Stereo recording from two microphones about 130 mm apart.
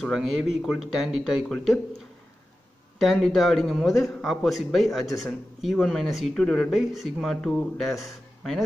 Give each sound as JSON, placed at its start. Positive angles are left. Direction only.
{"t": 0.0, "sound": "a man's voice", "side_deg": 0}
{"t": 3.0, "sound": "a man's voice", "side_deg": 5}